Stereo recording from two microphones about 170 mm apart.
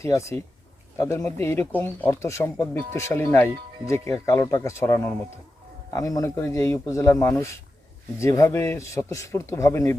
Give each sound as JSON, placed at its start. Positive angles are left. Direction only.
{"t": 0.0, "sound": "speech", "side_deg": 15}